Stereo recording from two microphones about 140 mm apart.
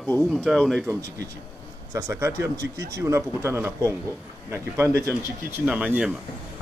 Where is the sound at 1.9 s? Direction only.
20° right (ahead or behind).